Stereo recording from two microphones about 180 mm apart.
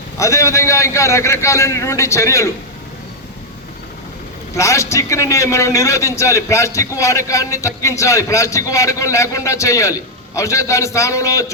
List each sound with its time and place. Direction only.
0.2 s a man's voice: 15° left (ahead or behind)
4.5 s a man's voice: 15° left (ahead or behind)